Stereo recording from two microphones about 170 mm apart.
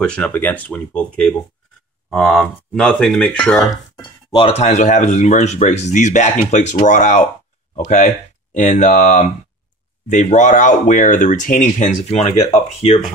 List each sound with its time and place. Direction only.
0.0 s speech: 5° left (ahead or behind)
3.7 s speech: 30° left (ahead or behind)